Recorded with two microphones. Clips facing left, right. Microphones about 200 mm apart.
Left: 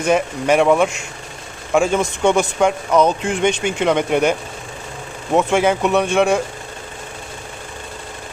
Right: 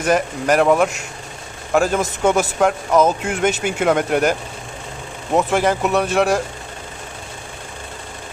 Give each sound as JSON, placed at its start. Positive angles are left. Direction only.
{"t": 0.0, "sound": "a man's voice", "side_deg": 0}